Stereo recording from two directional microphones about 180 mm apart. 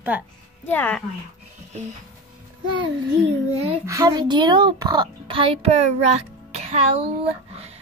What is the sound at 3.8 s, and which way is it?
A child's voice, 20° right (ahead or behind).